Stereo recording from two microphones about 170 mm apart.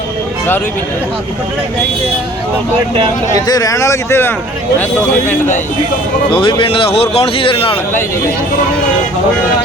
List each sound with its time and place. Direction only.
3.3 s speech: 20° left (ahead or behind)
6.3 s speech: 30° left (ahead or behind)